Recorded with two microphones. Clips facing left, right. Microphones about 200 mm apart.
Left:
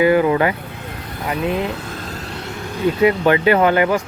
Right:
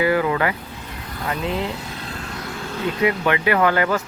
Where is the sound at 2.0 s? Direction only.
35° left (ahead or behind).